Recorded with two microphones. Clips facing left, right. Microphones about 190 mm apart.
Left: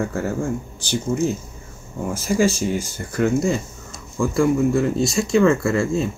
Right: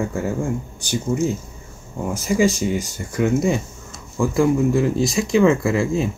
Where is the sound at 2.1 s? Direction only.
15° right (ahead or behind).